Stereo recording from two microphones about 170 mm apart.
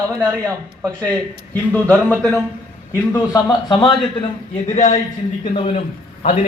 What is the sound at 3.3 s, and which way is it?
Speech, 30° left (ahead or behind).